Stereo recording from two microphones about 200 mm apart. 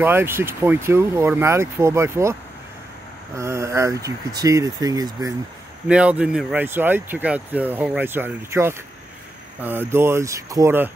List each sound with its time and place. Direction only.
0.0 s speech: 10° right (ahead or behind)
3.3 s speech: 15° right (ahead or behind)
5.9 s speech: 5° right (ahead or behind)